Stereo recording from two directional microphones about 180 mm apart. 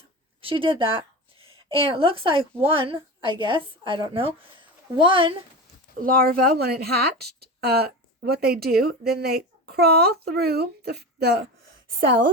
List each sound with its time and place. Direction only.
0.4 s a woman's voice: 30° right (ahead or behind)
6.0 s speech: 55° right (ahead or behind)
11.9 s a woman's voice: 55° right (ahead or behind)